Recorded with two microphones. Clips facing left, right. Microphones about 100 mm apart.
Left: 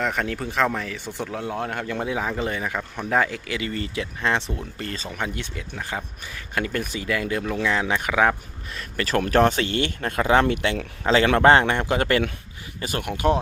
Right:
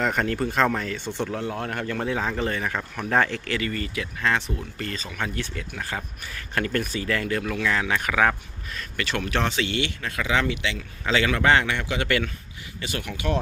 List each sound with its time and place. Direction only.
0.0 s speech: centre (ahead or behind)
3.6 s speech: 25° left (ahead or behind)
5.2 s speech: 20° left (ahead or behind)
8.7 s speech: 35° left (ahead or behind)